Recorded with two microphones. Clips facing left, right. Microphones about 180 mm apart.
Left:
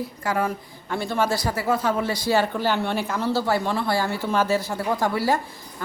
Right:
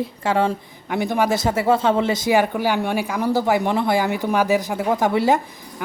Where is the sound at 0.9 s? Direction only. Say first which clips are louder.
Right 4 dB; 15° right (ahead or behind).